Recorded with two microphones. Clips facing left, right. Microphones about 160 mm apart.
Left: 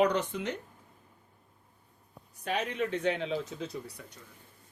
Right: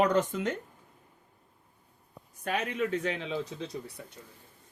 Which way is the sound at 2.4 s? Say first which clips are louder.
Right 1 dB; 45° right (ahead or behind).